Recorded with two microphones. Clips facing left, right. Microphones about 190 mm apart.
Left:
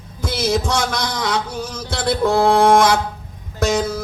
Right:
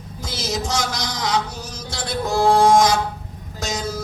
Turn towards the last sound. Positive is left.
turn(degrees=60)  # may be behind; listen again after turning